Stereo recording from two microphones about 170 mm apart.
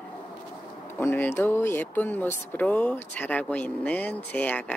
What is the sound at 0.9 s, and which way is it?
Speech, 10° left (ahead or behind).